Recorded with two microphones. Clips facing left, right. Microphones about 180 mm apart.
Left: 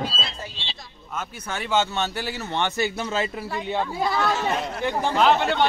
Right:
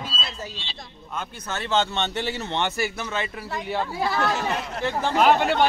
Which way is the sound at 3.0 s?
30° left (ahead or behind).